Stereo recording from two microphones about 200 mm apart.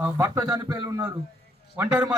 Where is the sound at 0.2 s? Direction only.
20° right (ahead or behind).